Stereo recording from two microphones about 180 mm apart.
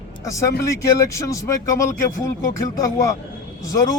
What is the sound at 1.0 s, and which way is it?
Speech, 15° left (ahead or behind).